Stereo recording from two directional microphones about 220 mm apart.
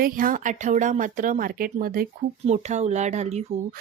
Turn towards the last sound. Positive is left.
turn(degrees=-30)  # may be behind; listen again after turning